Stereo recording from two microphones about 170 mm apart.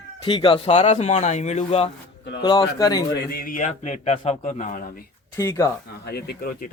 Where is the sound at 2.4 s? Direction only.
25° left (ahead or behind).